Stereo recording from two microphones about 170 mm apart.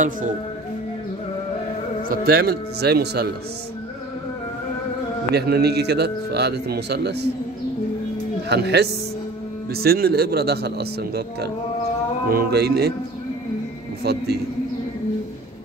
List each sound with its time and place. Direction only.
2.0 s a man's voice: 65° right (ahead or behind)
5.3 s a man's voice: 70° right (ahead or behind)
8.5 s a man's voice: 75° right (ahead or behind)
14.1 s a man's voice: 70° right (ahead or behind)